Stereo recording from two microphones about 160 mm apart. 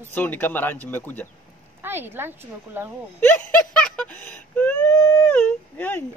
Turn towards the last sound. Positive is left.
turn(degrees=10)  # may be behind; listen again after turning